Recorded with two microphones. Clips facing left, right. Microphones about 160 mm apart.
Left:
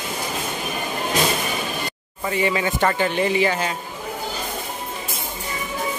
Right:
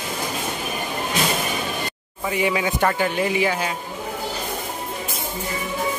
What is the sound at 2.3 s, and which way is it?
A man's voice, 5° right (ahead or behind).